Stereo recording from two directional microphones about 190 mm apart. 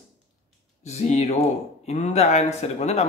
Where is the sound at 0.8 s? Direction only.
35° left (ahead or behind).